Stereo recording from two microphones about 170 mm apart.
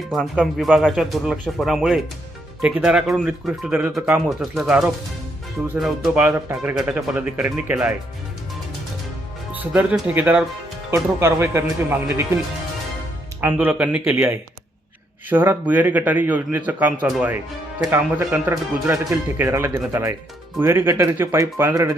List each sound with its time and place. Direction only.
0.1 s speech: centre (ahead or behind)
6.2 s speech: 15° right (ahead or behind)
9.5 s speech: 10° right (ahead or behind)
13.4 s speech: 10° right (ahead or behind)